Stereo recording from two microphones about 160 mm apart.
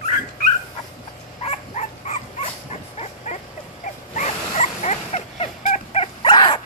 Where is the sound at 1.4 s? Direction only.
45° left (ahead or behind).